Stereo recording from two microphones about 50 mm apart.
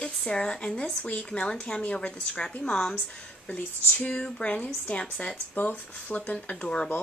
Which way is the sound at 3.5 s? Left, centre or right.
Left.